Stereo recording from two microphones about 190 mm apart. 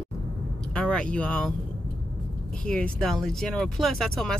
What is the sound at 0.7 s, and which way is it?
Speech, 5° left (ahead or behind).